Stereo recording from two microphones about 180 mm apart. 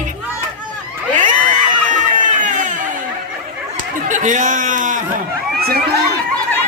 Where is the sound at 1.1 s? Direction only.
45° right (ahead or behind).